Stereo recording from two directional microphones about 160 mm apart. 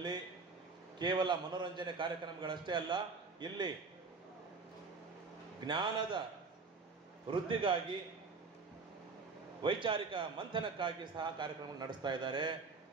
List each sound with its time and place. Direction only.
0.9 s a man's voice: 30° right (ahead or behind)
5.7 s a man's voice: 30° right (ahead or behind)
7.2 s a man's voice: 30° right (ahead or behind)
9.6 s a man's voice: 30° right (ahead or behind)